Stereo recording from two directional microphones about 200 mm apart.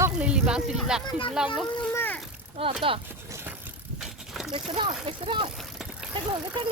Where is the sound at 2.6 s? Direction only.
25° right (ahead or behind).